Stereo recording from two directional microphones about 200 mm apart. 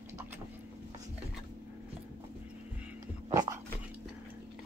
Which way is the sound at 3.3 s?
15° right (ahead or behind).